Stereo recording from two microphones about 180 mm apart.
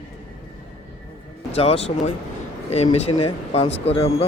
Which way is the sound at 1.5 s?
35° left (ahead or behind).